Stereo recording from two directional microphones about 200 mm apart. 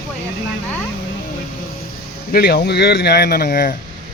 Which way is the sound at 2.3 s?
50° left (ahead or behind).